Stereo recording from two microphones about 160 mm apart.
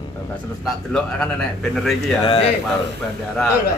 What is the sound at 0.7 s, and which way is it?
A man's voice, 5° left (ahead or behind).